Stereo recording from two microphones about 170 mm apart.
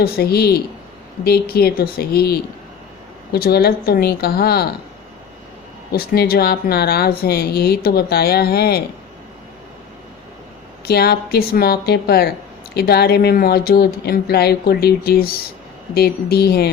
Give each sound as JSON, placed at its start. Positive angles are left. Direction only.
{"t": 0.0, "sound": "speech", "side_deg": 65}
{"t": 5.9, "sound": "speech", "side_deg": 65}
{"t": 10.8, "sound": "speech", "side_deg": 65}